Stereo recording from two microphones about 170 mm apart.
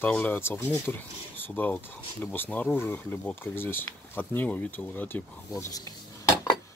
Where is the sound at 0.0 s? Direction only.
10° left (ahead or behind).